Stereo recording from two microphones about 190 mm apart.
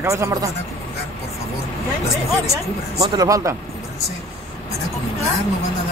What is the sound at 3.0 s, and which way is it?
Speech, 20° right (ahead or behind).